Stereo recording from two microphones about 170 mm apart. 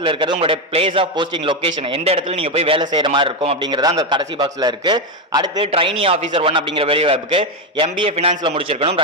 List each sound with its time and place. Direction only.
0.0 s a man's voice: 30° right (ahead or behind)